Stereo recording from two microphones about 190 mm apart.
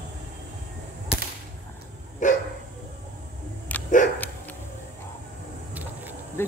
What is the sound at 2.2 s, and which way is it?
Dog, 40° left (ahead or behind).